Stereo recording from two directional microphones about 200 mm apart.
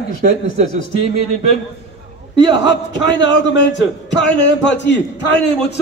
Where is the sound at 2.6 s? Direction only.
65° left (ahead or behind).